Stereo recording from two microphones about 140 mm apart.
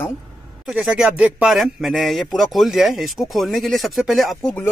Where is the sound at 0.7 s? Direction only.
5° right (ahead or behind).